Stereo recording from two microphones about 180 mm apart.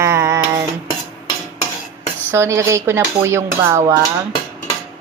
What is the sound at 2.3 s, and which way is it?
Speech, 15° right (ahead or behind).